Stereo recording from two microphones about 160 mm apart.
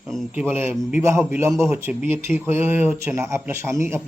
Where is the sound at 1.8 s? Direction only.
15° right (ahead or behind).